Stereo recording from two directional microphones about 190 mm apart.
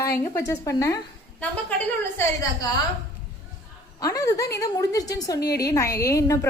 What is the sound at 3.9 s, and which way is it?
A woman's voice, 15° left (ahead or behind).